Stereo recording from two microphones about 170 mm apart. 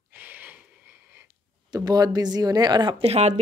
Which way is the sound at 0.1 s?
10° right (ahead or behind).